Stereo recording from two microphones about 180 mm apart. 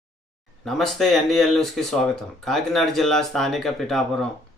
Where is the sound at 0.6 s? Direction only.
Centre (ahead or behind).